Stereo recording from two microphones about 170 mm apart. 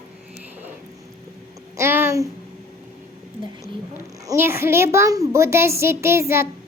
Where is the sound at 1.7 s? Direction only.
15° right (ahead or behind).